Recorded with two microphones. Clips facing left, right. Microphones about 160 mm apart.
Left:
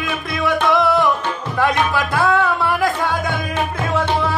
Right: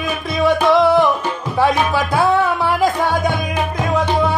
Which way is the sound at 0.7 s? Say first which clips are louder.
Right 4 dB; 20° right (ahead or behind).